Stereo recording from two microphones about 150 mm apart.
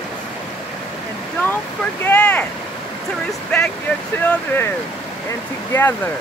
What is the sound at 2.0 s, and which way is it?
Speech, 10° left (ahead or behind).